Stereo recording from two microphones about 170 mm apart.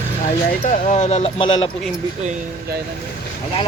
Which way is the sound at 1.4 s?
30° left (ahead or behind).